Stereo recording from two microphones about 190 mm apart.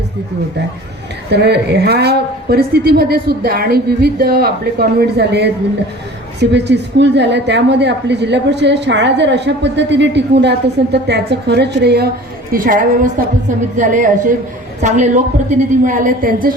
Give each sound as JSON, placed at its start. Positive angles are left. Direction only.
{"t": 1.3, "sound": "a woman's voice", "side_deg": -60}
{"t": 12.5, "sound": "a woman's voice", "side_deg": -45}